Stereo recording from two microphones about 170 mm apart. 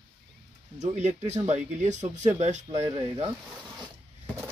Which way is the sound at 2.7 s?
20° right (ahead or behind).